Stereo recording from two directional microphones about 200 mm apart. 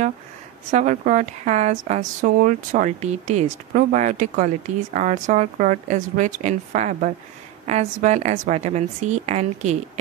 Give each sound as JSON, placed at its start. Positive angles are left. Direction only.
{"t": 0.7, "sound": "speech", "side_deg": -40}